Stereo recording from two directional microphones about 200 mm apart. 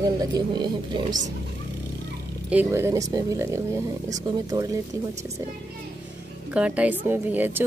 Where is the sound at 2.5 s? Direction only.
10° right (ahead or behind).